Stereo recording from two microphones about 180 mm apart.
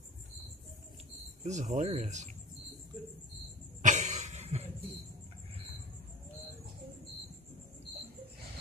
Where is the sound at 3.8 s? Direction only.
45° right (ahead or behind).